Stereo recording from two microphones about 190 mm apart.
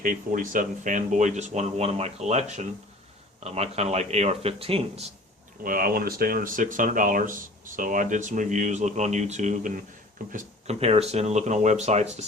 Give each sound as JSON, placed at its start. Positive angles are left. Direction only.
{"t": 0.0, "sound": "speech", "side_deg": -45}
{"t": 5.6, "sound": "speech", "side_deg": -50}